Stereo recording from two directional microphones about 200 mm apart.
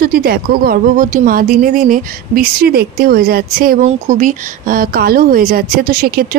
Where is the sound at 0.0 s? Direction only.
50° right (ahead or behind).